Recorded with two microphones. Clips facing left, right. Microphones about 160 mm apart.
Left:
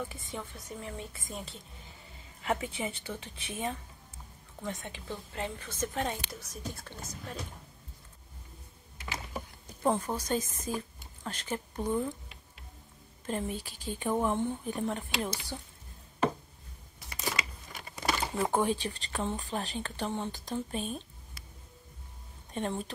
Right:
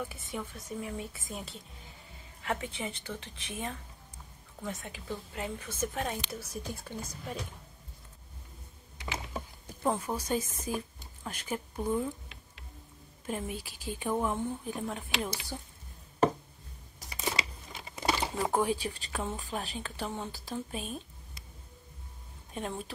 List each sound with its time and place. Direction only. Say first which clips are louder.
0.0 s a woman's voice: right 1 dB; 10° right (ahead or behind)
9.9 s a woman's voice: even; 10° right (ahead or behind)
13.3 s a woman's voice: left 2 dB; 5° right (ahead or behind)
15.2 s a woman's voice: left 1 dB; 10° right (ahead or behind)
17.0 s a sound: even; 40° right (ahead or behind)
17.7 s crumpling: right 2 dB; 25° right (ahead or behind)
18.3 s speech: left 3 dB; centre (ahead or behind)
22.5 s a woman's voice: left 3 dB; 5° right (ahead or behind)